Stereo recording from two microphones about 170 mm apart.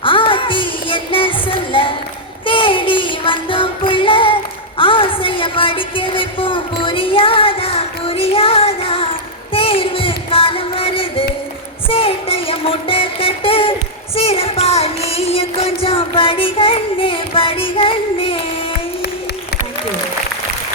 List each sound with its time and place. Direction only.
0.0 s music: 30° left (ahead or behind)
4.8 s a sound: 30° left (ahead or behind)
9.5 s music: 35° left (ahead or behind)